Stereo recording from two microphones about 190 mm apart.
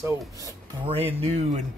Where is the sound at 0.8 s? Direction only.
30° right (ahead or behind).